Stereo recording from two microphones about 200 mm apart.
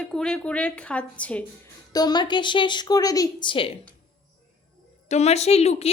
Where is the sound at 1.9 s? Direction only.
20° left (ahead or behind).